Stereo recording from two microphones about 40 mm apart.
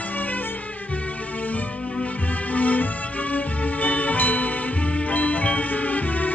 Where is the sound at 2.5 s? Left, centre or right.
Left.